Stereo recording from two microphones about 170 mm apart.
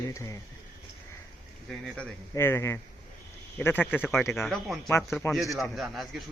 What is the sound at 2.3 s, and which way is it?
Speech, 15° left (ahead or behind).